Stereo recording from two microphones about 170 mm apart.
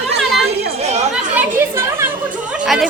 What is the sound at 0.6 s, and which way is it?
Chatter, 40° right (ahead or behind).